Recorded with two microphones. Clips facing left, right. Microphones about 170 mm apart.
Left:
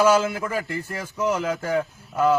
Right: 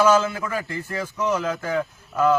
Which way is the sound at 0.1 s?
10° left (ahead or behind).